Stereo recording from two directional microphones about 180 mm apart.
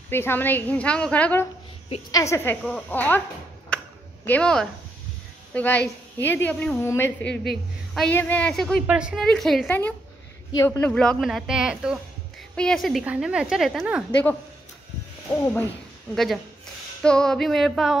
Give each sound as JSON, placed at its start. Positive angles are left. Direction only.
{"t": 0.1, "sound": "a woman's voice", "side_deg": 10}
{"t": 4.2, "sound": "a woman's voice", "side_deg": 5}
{"t": 10.9, "sound": "a woman's voice", "side_deg": 0}
{"t": 15.3, "sound": "a woman's voice", "side_deg": 10}
{"t": 17.0, "sound": "a woman's voice", "side_deg": 5}